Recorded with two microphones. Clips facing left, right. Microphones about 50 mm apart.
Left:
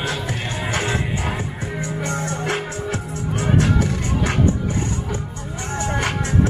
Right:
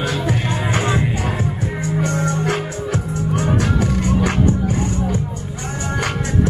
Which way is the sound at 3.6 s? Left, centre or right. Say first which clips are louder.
Right 1 dB; right.